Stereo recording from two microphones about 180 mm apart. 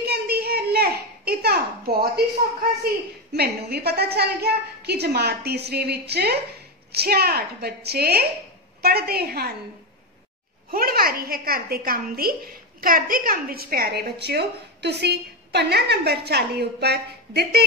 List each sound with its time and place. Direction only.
0.0 s a sound: 60° right (ahead or behind)
3.3 s a child's voice: 60° right (ahead or behind)
10.7 s a child's voice: 55° right (ahead or behind)